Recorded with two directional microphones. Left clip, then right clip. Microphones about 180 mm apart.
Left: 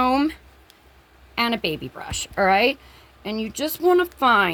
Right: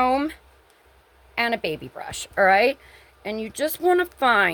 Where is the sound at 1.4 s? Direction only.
40° right (ahead or behind).